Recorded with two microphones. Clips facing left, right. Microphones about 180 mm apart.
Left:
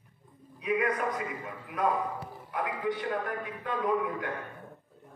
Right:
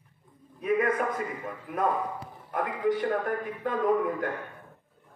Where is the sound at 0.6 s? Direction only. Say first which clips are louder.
Right 3 dB; 50° right (ahead or behind).